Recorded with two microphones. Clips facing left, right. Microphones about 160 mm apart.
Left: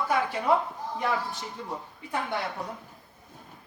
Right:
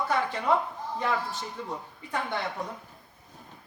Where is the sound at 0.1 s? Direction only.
10° left (ahead or behind).